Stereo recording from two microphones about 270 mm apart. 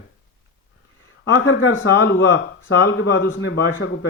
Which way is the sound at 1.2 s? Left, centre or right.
Left.